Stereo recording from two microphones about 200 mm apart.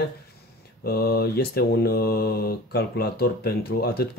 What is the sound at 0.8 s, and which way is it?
Speech, 50° left (ahead or behind).